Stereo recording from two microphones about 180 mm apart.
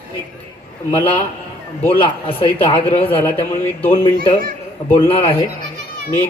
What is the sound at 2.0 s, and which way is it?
Speech, 30° left (ahead or behind).